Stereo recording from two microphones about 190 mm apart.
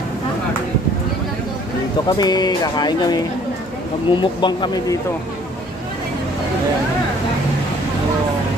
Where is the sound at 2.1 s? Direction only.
20° left (ahead or behind).